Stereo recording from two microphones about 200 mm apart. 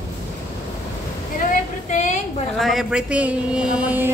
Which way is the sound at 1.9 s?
35° left (ahead or behind).